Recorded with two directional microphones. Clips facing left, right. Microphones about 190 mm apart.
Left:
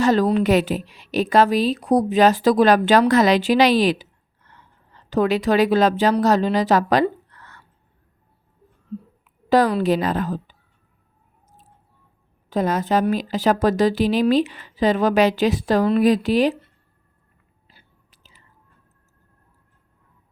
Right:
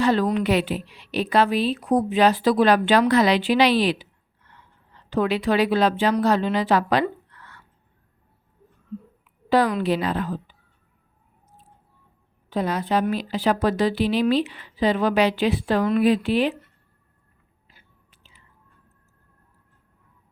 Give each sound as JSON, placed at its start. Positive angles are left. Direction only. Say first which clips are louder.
{"t": 0.0, "sound": "a woman's voice", "louder": "left 3 dB", "side_deg": 40}
{"t": 9.5, "sound": "a woman's voice", "louder": "left 3 dB", "side_deg": 40}
{"t": 12.5, "sound": "a woman's voice", "louder": "left 3 dB", "side_deg": 45}
{"t": 17.7, "sound": "whispering", "louder": "left 2 dB", "side_deg": 35}